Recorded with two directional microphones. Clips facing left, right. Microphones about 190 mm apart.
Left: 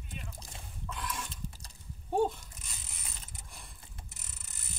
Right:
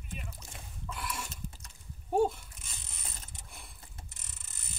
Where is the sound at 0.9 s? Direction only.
5° right (ahead or behind).